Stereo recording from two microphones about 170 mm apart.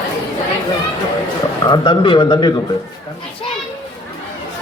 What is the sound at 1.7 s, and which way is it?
Speech, 25° left (ahead or behind).